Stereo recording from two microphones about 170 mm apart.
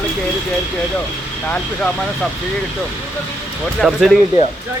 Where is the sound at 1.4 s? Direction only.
10° left (ahead or behind).